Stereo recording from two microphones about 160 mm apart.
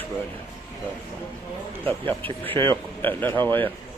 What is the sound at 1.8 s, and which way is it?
Speech, 10° left (ahead or behind).